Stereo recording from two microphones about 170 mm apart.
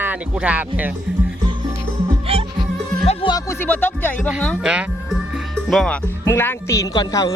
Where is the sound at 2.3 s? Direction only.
35° right (ahead or behind).